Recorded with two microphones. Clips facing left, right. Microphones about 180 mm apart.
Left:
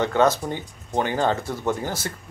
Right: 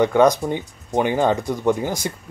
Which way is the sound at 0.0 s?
15° right (ahead or behind).